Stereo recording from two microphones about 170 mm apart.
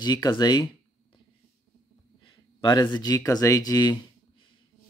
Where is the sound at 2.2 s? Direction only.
25° left (ahead or behind).